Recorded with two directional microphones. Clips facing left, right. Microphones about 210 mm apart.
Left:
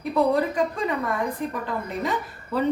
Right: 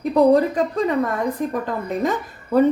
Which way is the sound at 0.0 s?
40° right (ahead or behind).